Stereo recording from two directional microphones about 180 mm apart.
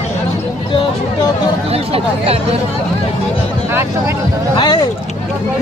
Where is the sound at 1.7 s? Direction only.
35° right (ahead or behind).